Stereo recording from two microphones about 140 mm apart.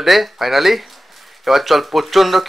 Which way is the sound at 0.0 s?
Centre (ahead or behind).